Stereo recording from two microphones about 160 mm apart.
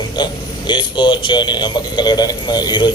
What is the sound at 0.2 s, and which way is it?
Speech, 30° left (ahead or behind).